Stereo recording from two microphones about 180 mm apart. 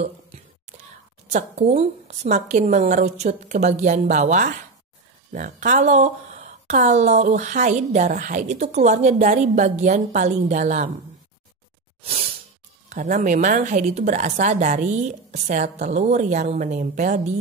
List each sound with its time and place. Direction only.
0.0 s whispering: 40° right (ahead or behind)
1.3 s speech: 40° right (ahead or behind)
12.0 s a sound: 35° right (ahead or behind)
12.9 s a woman's voice: 45° right (ahead or behind)